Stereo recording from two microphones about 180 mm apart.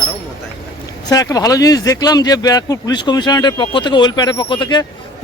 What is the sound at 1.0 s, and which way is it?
Speech, 20° left (ahead or behind).